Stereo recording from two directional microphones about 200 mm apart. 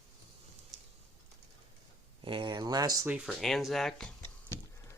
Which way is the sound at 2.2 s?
25° right (ahead or behind).